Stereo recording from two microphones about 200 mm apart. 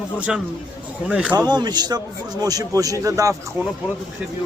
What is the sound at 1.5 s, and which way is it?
A man's voice, 20° right (ahead or behind).